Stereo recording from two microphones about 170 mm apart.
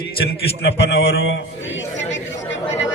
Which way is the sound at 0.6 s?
90° left.